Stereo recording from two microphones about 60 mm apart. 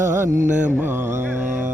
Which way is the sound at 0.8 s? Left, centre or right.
Right.